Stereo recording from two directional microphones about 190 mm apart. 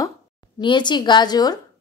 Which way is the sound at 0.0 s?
20° left (ahead or behind).